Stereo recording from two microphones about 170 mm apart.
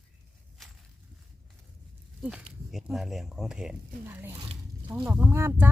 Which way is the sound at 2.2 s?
10° right (ahead or behind).